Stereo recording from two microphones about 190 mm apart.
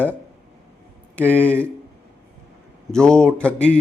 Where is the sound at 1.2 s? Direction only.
10° left (ahead or behind).